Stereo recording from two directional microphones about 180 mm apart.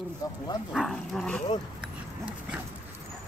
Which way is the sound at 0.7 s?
Centre (ahead or behind).